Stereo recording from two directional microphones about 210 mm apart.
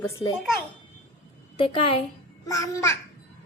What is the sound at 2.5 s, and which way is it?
Speech, 15° left (ahead or behind).